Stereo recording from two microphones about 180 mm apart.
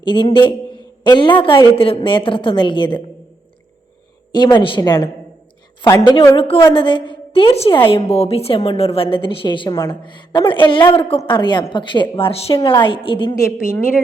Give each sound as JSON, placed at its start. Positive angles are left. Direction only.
{"t": 0.0, "sound": "a woman's voice", "side_deg": 25}
{"t": 4.3, "sound": "a woman's voice", "side_deg": 25}
{"t": 6.3, "sound": "a woman's voice", "side_deg": 30}
{"t": 13.3, "sound": "a woman's voice", "side_deg": 15}